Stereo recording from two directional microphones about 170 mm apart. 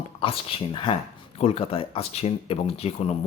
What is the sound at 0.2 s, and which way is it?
Speech, 30° left (ahead or behind).